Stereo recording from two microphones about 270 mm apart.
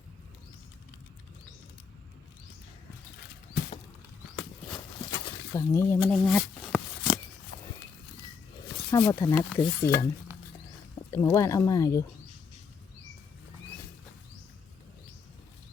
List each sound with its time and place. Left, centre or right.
5.1 s a sound: centre
7.5 s horse: left
8.9 s stir: centre
11.1 s stir: centre